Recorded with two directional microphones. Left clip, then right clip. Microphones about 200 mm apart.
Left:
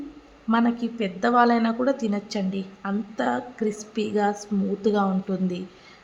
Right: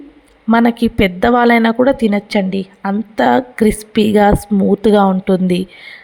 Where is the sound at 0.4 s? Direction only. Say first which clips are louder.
Right 11 dB; 40° right (ahead or behind).